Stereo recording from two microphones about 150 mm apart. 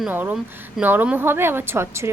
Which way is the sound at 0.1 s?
10° right (ahead or behind).